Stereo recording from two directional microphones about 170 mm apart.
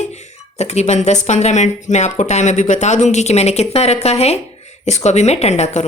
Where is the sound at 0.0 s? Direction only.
40° left (ahead or behind).